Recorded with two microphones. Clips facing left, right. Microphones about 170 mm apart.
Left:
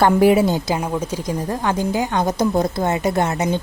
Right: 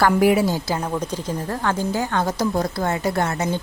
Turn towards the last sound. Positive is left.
turn(degrees=20)  # may be behind; listen again after turning